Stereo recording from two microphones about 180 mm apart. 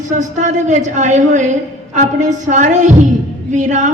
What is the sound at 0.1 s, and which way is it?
A woman's voice, 40° right (ahead or behind).